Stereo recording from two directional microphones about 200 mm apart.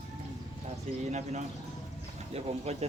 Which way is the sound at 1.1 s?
35° right (ahead or behind).